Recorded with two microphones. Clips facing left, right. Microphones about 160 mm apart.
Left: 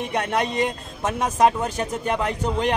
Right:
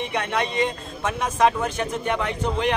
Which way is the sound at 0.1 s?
40° left (ahead or behind).